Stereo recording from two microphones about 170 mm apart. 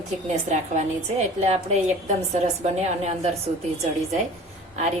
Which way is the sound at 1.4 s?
40° right (ahead or behind).